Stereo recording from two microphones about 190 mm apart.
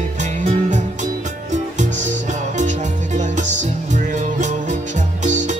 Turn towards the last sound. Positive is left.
turn(degrees=-40)  # may be behind; listen again after turning